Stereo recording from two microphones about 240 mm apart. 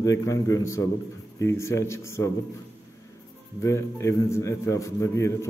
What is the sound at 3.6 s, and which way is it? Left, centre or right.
Speech, centre.